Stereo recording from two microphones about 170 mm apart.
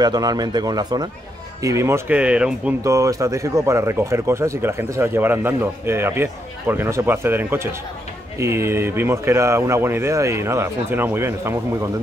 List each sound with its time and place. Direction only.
0.0 s speech: 25° right (ahead or behind); by 2.7 s 5° right (ahead or behind)
2.8 s speech: 20° right (ahead or behind)